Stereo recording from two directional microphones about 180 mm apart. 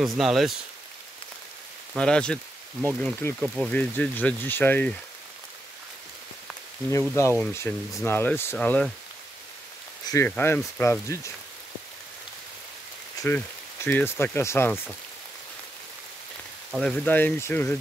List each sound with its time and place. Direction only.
0.0 s speech: centre (ahead or behind)
2.0 s speech: 5° left (ahead or behind)
3.3 s speech: 5° right (ahead or behind)
3.7 s speech: 5° left (ahead or behind)
6.9 s speech: 15° left (ahead or behind)
10.0 s speech: 15° left (ahead or behind)
13.2 s speech: 20° left (ahead or behind)
16.7 s speech: 5° left (ahead or behind)